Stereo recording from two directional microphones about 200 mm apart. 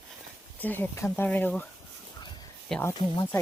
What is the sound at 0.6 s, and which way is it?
Speech, 10° left (ahead or behind).